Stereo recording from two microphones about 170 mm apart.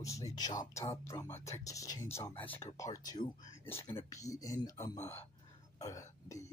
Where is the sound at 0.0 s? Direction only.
20° left (ahead or behind).